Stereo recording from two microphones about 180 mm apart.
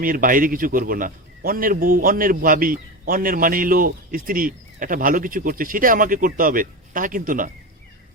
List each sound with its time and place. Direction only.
0.0 s a man's voice: 50° right (ahead or behind)